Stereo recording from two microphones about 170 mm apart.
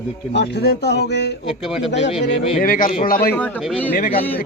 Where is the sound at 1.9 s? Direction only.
90° left.